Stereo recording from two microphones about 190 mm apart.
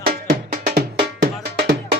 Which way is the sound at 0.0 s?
55° right (ahead or behind).